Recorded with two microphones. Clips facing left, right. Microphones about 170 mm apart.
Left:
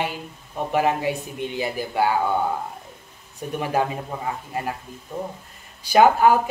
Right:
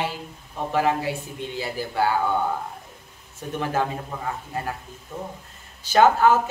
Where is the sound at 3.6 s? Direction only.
15° left (ahead or behind).